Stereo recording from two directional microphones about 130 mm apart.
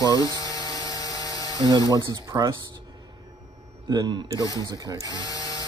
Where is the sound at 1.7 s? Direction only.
30° right (ahead or behind).